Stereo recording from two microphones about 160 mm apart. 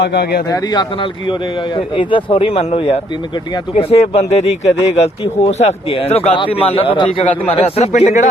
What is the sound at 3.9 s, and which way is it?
A man's voice, 40° left (ahead or behind).